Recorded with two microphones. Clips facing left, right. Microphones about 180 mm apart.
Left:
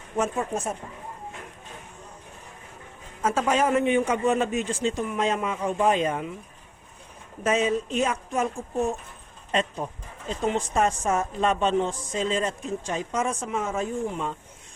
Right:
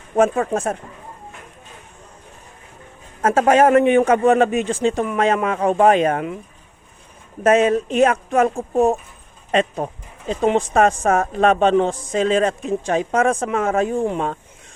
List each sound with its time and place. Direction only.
0.2 s speech: 90° right
3.2 s speech: 85° right
4.3 s speech: 65° right (ahead or behind)
7.4 s speech: 75° right (ahead or behind); by 9.0 s 55° right (ahead or behind)
9.5 s speech: 70° right (ahead or behind)